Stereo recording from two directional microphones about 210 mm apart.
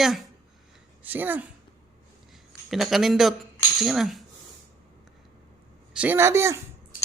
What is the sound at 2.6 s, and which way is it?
Speech, centre (ahead or behind).